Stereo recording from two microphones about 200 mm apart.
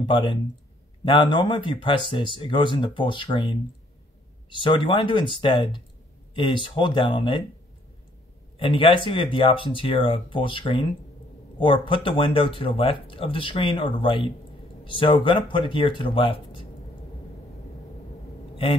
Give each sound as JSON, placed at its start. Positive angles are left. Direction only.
{"t": 0.0, "sound": "speech", "side_deg": 25}
{"t": 8.5, "sound": "speech", "side_deg": 25}